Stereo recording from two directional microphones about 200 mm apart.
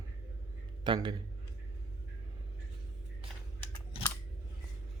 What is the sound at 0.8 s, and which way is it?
Speech, 25° right (ahead or behind).